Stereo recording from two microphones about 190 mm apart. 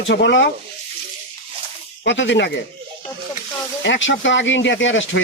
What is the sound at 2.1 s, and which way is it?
Speech, 70° left (ahead or behind).